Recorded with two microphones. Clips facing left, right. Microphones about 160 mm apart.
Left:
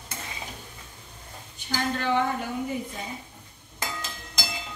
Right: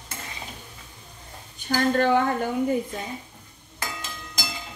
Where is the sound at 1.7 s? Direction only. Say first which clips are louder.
Right 6 dB; 50° right (ahead or behind).